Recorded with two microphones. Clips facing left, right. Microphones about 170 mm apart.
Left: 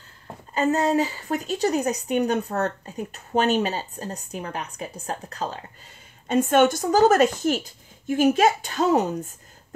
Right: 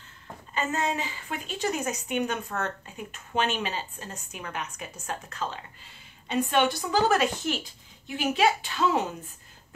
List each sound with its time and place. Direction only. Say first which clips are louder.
0.6 s a woman's voice: left 8 dB; 40° left (ahead or behind)